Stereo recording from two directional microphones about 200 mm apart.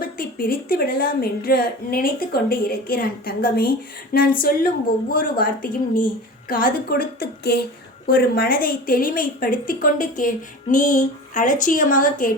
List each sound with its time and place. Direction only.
0.0 s a woman's voice: 45° left (ahead or behind)
6.5 s a woman's voice: 45° left (ahead or behind)